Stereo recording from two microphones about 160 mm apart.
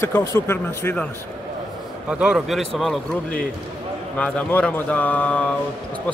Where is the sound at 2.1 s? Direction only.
5° right (ahead or behind).